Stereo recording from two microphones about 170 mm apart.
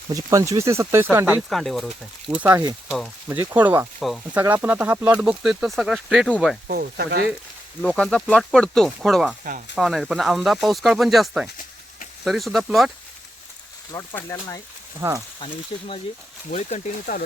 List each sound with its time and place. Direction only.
0.1 s speech: 20° right (ahead or behind)
1.4 s speech: centre (ahead or behind)
2.4 s speech: 10° right (ahead or behind)
6.7 s speech: 60° right (ahead or behind)
7.8 s speech: 5° left (ahead or behind)
13.9 s speech: 15° left (ahead or behind)
15.7 s speech: 30° left (ahead or behind)
16.5 s speech: 45° left (ahead or behind)